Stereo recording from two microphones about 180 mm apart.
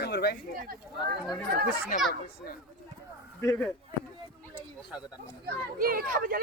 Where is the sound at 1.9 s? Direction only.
50° left (ahead or behind).